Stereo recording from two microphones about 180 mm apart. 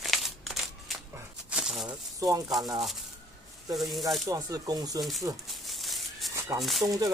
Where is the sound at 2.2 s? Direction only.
20° right (ahead or behind).